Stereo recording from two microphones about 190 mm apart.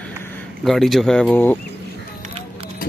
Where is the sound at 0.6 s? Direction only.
Centre (ahead or behind).